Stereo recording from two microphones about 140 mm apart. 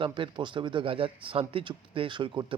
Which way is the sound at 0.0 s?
35° right (ahead or behind).